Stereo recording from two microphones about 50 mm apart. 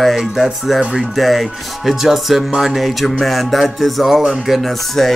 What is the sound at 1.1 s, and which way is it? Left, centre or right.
Speech, centre.